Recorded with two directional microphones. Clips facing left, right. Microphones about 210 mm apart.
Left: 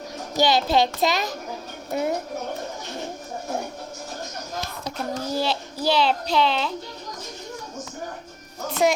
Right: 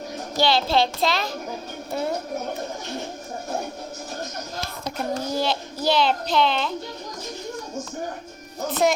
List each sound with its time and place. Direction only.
0.3 s a child's voice: 15° left (ahead or behind)
4.9 s a child's voice: 5° left (ahead or behind)